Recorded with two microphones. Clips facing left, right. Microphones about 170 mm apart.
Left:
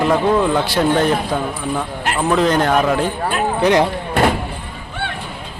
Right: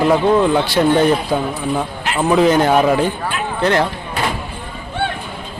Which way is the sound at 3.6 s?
15° left (ahead or behind).